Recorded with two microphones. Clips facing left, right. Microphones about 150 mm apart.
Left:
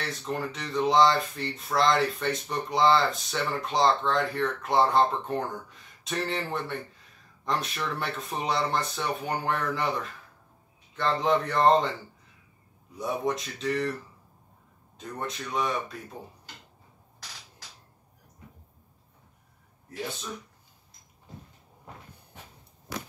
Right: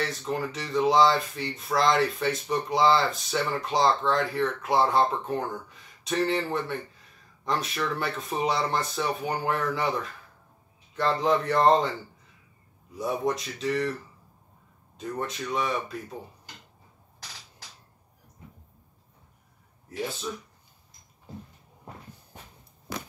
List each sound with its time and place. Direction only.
0.1 s speech: centre (ahead or behind)
11.0 s speech: centre (ahead or behind)
12.9 s speech: centre (ahead or behind)
15.0 s speech: centre (ahead or behind)